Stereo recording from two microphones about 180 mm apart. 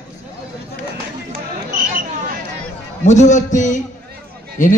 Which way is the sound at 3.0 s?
40° left (ahead or behind).